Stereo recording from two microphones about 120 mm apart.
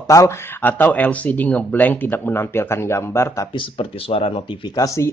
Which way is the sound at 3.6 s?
50° left (ahead or behind).